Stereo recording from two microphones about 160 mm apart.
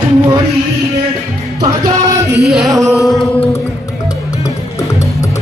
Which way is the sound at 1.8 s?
20° right (ahead or behind).